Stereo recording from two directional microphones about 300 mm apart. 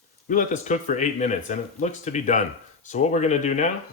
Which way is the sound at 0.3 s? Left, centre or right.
Left.